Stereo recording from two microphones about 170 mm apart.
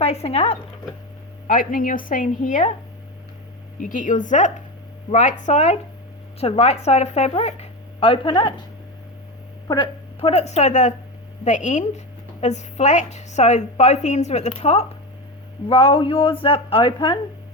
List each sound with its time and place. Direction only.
0.0 s speech: 40° left (ahead or behind)
1.5 s a woman's voice: 55° left (ahead or behind)
3.8 s a woman's voice: 50° left (ahead or behind); by 8.6 s 30° left (ahead or behind)
9.6 s a woman's voice: 25° left (ahead or behind)